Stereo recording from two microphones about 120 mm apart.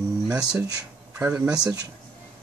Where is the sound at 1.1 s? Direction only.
15° right (ahead or behind).